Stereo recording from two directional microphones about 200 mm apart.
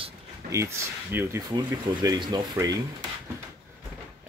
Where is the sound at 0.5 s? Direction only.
15° right (ahead or behind).